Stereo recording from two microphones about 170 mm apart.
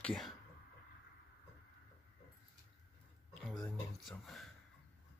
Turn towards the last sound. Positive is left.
turn(degrees=0)  # may be behind; listen again after turning